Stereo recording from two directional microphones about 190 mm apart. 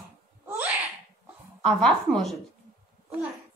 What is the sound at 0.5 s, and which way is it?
Sneeze, 10° right (ahead or behind).